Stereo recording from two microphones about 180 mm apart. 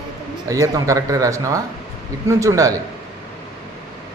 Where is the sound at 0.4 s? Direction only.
20° right (ahead or behind).